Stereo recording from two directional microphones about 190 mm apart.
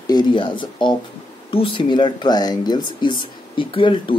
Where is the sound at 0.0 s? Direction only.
20° left (ahead or behind).